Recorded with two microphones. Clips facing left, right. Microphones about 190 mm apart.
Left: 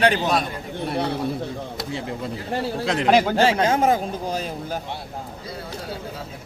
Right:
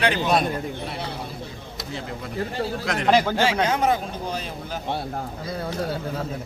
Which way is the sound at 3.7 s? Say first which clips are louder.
Left 3 dB; 45° left (ahead or behind).